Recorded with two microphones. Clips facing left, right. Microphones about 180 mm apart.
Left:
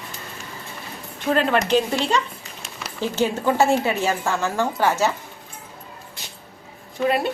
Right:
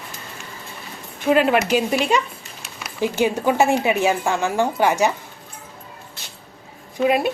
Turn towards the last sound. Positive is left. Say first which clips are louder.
# right 3 dB
turn(degrees=-15)  # may be behind; listen again after turning